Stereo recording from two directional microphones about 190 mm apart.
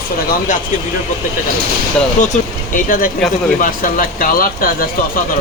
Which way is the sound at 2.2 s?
40° left (ahead or behind).